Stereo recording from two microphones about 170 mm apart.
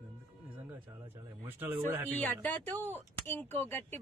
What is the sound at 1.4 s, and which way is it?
Speech, 10° right (ahead or behind).